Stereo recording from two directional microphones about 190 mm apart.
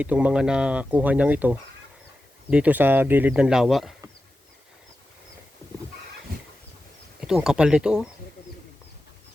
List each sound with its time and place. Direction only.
0.0 s speech: 5° right (ahead or behind)
6.3 s a sound: 55° right (ahead or behind)
7.2 s speech: 5° right (ahead or behind)